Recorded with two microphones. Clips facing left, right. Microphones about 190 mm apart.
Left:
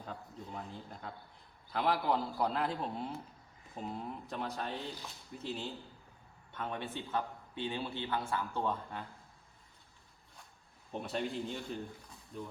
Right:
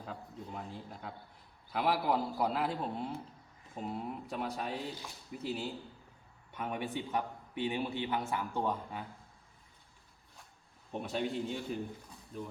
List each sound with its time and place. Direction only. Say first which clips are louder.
0.0 s a man's voice: right 1 dB; 5° right (ahead or behind)
10.9 s a man's voice: right 2 dB; centre (ahead or behind)